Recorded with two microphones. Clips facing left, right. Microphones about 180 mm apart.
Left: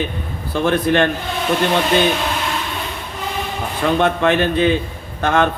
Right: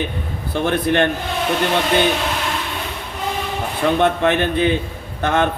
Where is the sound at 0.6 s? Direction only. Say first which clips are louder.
Left 2 dB; 50° left (ahead or behind).